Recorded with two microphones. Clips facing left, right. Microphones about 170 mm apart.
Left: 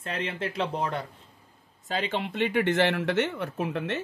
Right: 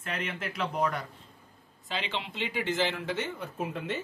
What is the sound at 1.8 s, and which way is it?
Speech, 45° left (ahead or behind).